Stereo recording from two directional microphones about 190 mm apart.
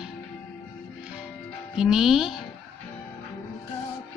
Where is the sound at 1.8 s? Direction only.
5° right (ahead or behind).